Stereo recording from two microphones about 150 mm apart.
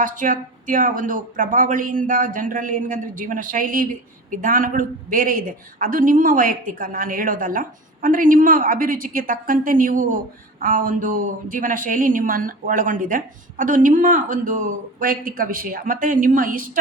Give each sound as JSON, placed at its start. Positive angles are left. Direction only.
{"t": 0.0, "sound": "a woman's voice", "side_deg": -65}